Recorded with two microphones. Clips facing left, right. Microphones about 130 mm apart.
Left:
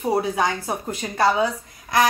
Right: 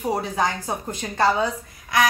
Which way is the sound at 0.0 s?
10° left (ahead or behind).